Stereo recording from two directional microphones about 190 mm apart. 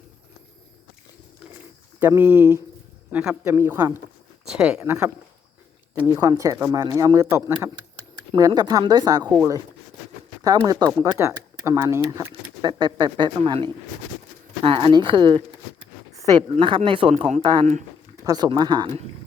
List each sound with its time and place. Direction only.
2.0 s a man's voice: 10° right (ahead or behind)
4.8 s a man's voice: 15° right (ahead or behind); by 17.4 s 35° right (ahead or behind)
18.3 s speech: 20° right (ahead or behind)